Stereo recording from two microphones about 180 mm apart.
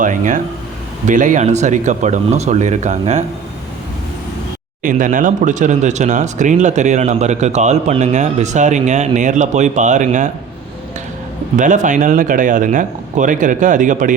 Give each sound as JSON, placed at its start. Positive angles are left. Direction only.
{"t": 0.0, "sound": "speech", "side_deg": -45}
{"t": 4.8, "sound": "speech", "side_deg": -50}
{"t": 11.5, "sound": "speech", "side_deg": -45}